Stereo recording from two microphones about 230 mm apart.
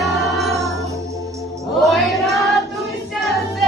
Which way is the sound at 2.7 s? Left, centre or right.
Centre.